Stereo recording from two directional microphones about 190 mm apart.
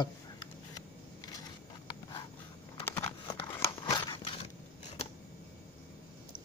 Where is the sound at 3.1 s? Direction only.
25° left (ahead or behind).